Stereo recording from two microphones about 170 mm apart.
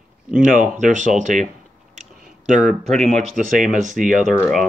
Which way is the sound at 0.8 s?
45° right (ahead or behind).